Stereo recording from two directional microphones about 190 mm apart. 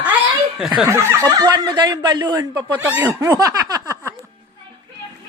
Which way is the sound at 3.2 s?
20° right (ahead or behind).